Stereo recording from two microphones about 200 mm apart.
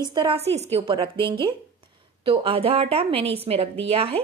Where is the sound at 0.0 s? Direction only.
25° right (ahead or behind).